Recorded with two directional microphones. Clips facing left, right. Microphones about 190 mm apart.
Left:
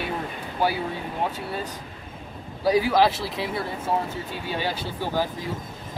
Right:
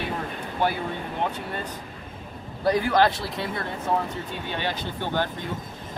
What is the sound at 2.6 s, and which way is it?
Speech, 5° left (ahead or behind).